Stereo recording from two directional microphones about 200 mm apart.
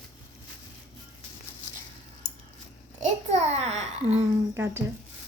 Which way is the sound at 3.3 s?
35° right (ahead or behind).